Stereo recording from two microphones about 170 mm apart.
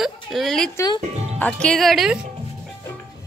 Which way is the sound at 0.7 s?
25° left (ahead or behind).